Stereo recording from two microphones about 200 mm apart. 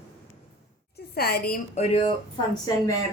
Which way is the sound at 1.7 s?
30° left (ahead or behind).